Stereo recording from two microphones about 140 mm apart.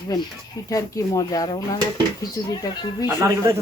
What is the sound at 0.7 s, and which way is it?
A woman's voice, 25° left (ahead or behind).